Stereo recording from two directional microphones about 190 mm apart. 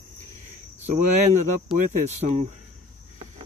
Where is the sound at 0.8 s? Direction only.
40° right (ahead or behind).